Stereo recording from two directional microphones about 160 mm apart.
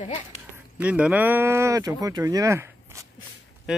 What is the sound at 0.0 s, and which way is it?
Speech, 40° left (ahead or behind).